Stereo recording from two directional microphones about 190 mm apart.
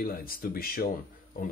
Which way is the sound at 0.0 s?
50° left (ahead or behind).